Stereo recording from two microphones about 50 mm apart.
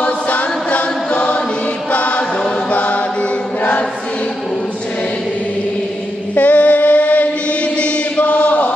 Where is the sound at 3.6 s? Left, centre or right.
Left.